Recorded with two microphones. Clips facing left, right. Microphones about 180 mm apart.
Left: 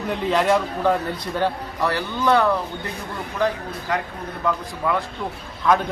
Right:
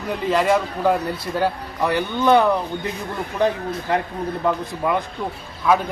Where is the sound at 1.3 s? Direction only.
15° right (ahead or behind).